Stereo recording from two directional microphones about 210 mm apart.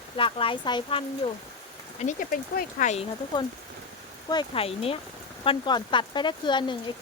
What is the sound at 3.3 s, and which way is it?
Speech, 20° left (ahead or behind).